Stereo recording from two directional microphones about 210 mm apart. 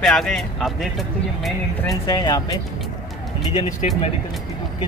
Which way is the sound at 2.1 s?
15° left (ahead or behind).